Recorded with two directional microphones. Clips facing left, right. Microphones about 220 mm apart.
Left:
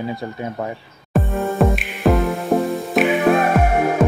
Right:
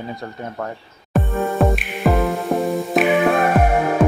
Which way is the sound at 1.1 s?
Centre (ahead or behind).